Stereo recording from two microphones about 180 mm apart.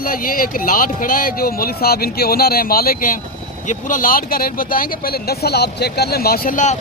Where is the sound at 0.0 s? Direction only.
50° left (ahead or behind).